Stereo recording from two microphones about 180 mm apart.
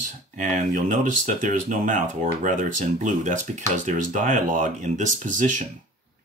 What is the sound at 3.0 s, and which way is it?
Speech, 45° right (ahead or behind).